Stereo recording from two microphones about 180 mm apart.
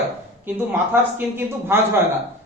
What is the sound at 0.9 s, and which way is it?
A man's voice, 10° right (ahead or behind).